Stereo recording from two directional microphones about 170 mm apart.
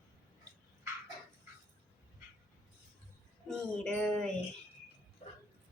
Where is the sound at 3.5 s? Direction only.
5° left (ahead or behind).